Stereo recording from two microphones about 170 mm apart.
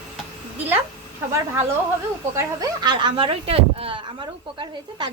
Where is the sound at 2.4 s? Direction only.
20° right (ahead or behind).